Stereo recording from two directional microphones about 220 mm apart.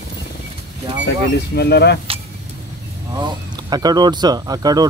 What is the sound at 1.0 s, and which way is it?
Speech, 50° left (ahead or behind).